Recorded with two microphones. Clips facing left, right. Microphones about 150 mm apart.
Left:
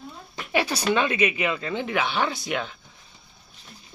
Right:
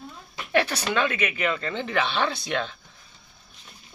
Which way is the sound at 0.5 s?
10° left (ahead or behind).